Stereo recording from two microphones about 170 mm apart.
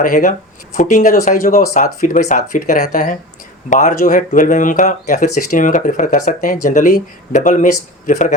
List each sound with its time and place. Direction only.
0.0 s speech: 50° left (ahead or behind)